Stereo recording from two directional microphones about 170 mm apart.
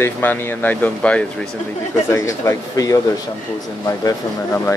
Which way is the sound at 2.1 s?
20° left (ahead or behind).